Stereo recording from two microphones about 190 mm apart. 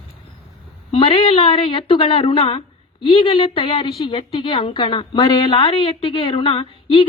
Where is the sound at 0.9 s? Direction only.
30° left (ahead or behind).